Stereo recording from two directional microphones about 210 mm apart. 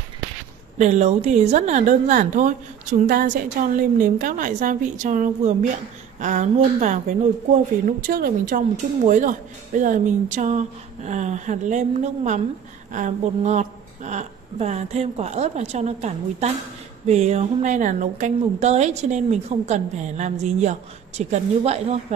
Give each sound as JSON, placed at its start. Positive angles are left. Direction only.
{"t": 0.7, "sound": "a woman's voice", "side_deg": -35}